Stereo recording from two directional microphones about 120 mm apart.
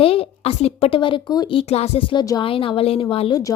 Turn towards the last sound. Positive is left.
turn(degrees=45)  # may be behind; listen again after turning